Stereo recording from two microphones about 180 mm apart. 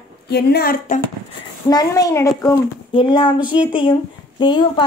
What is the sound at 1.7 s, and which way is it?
Speech, 20° left (ahead or behind).